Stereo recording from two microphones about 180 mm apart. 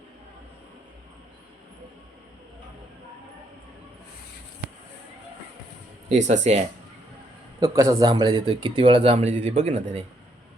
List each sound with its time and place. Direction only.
6.1 s speech: 40° right (ahead or behind)
7.6 s speech: 20° right (ahead or behind); by 10.0 s 35° right (ahead or behind)